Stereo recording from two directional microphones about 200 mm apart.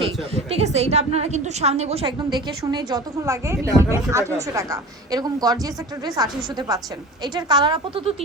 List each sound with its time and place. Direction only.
0.0 s a woman's voice: 30° right (ahead or behind)